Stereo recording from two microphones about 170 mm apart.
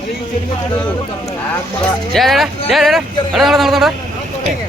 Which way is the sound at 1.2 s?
15° left (ahead or behind).